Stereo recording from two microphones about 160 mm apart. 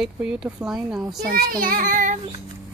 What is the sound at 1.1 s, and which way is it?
A child's voice, 65° right (ahead or behind).